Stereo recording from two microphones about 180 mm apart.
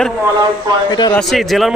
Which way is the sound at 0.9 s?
25° left (ahead or behind).